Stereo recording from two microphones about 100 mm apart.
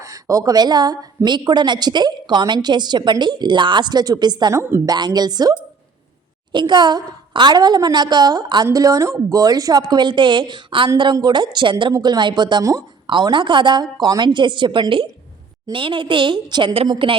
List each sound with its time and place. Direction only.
0.0 s a woman's voice: 35° right (ahead or behind)
4.5 s a woman's voice: 25° right (ahead or behind)
4.9 s a woman's voice: 45° right (ahead or behind)